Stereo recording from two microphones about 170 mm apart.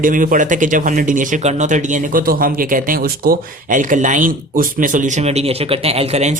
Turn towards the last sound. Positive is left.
turn(degrees=-40)  # may be behind; listen again after turning